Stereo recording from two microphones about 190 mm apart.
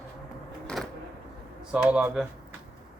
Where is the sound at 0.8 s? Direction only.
Centre (ahead or behind).